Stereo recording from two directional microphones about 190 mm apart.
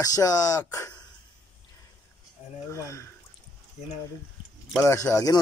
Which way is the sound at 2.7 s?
15° left (ahead or behind).